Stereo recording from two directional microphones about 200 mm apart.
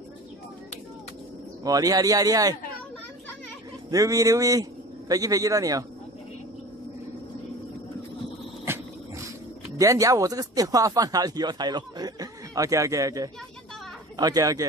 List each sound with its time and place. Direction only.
1.6 s speech: 15° right (ahead or behind)
3.9 s speech: 15° right (ahead or behind)
8.7 s dog: 10° right (ahead or behind)
9.8 s speech: 15° right (ahead or behind)